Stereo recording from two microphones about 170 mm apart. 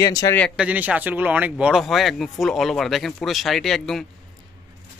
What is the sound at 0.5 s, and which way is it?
Speech, 5° right (ahead or behind).